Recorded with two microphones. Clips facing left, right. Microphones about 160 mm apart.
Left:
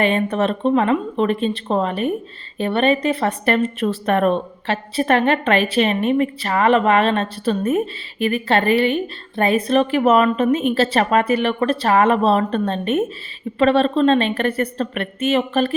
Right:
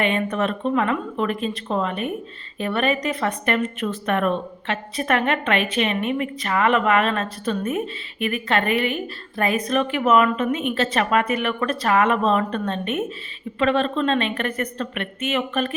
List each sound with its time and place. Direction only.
0.0 s a woman's voice: 30° left (ahead or behind)